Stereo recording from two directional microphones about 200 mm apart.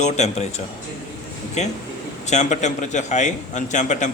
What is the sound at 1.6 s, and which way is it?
Speech, 35° left (ahead or behind).